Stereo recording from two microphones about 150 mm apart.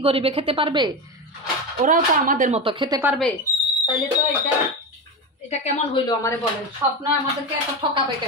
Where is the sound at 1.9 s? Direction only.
60° right (ahead or behind).